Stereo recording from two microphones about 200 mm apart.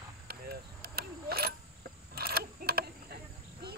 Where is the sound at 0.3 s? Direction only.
50° right (ahead or behind).